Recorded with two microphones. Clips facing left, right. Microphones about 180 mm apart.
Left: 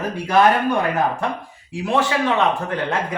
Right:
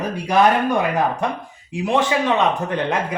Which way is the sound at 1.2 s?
20° right (ahead or behind).